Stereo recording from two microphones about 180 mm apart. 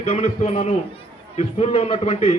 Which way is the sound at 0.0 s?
35° left (ahead or behind).